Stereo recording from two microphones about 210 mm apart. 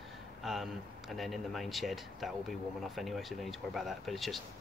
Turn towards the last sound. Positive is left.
turn(degrees=0)  # may be behind; listen again after turning